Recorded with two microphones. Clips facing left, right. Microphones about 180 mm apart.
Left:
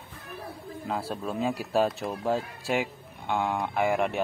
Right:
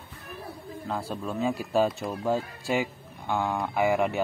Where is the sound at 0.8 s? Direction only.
5° left (ahead or behind).